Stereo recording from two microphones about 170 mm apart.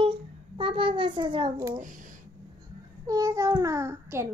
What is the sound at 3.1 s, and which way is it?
Child singing, 20° right (ahead or behind).